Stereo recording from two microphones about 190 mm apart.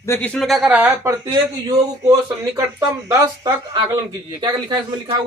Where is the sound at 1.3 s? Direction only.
25° right (ahead or behind).